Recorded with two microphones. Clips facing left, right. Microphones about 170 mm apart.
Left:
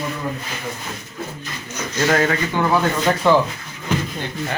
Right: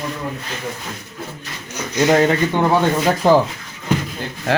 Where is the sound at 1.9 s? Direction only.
15° right (ahead or behind).